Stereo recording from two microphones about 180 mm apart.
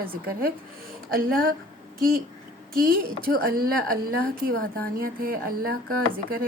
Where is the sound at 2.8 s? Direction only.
55° right (ahead or behind).